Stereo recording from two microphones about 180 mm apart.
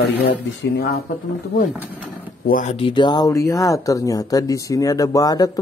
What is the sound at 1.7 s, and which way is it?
Speech, 10° right (ahead or behind).